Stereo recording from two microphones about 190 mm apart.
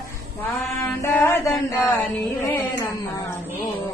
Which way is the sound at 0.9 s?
10° left (ahead or behind).